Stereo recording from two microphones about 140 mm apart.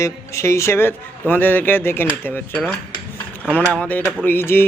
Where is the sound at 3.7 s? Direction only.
5° left (ahead or behind).